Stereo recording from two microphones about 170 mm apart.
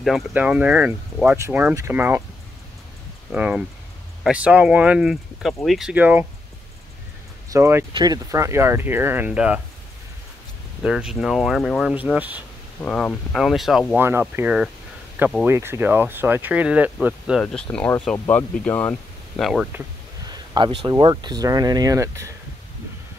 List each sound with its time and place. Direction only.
0.0 s speech: 5° right (ahead or behind)
3.3 s speech: 5° right (ahead or behind)
7.4 s speech: 15° right (ahead or behind)
10.8 s speech: 5° right (ahead or behind)
12.8 s speech: 5° left (ahead or behind)
17.4 s speech: 5° left (ahead or behind)
20.2 s a sound: 25° right (ahead or behind)
21.0 s speech: 25° right (ahead or behind)